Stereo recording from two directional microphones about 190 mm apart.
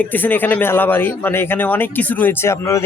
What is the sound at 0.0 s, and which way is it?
Speech, 10° left (ahead or behind).